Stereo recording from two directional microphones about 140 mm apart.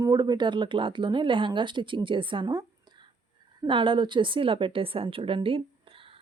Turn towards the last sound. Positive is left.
turn(degrees=-40)  # may be behind; listen again after turning